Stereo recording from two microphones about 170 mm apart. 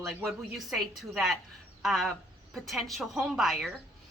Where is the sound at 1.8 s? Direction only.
Centre (ahead or behind).